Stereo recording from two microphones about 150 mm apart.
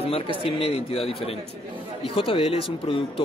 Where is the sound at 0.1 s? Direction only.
40° left (ahead or behind).